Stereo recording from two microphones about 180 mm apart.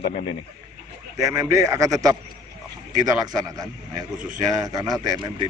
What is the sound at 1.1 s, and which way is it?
A man's voice, 15° right (ahead or behind).